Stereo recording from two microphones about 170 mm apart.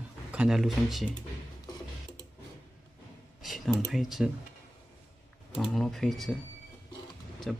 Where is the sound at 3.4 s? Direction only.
Centre (ahead or behind).